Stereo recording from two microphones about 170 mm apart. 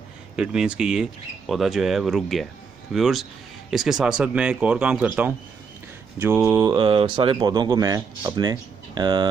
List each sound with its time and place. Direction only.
0.4 s speech: 5° right (ahead or behind); by 9.3 s 25° right (ahead or behind)